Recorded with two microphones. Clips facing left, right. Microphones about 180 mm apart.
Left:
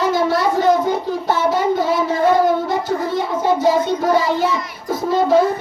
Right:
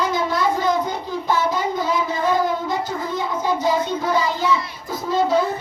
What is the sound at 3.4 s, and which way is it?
Child singing, 45° left (ahead or behind).